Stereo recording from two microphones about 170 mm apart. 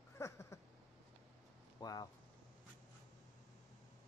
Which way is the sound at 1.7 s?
25° left (ahead or behind).